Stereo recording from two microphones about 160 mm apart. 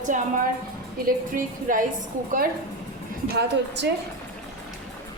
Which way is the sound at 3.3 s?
90° right.